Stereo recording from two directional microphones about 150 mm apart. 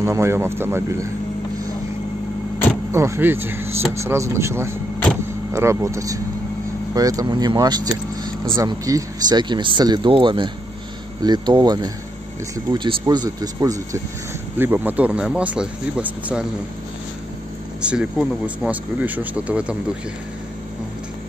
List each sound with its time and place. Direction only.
0.0 s speech: 20° right (ahead or behind)
2.9 s speech: 20° right (ahead or behind)
17.8 s speech: 5° right (ahead or behind)